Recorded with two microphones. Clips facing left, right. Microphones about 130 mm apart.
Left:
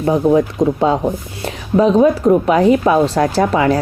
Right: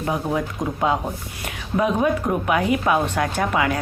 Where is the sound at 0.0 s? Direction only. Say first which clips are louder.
Left 10 dB; 35° left (ahead or behind).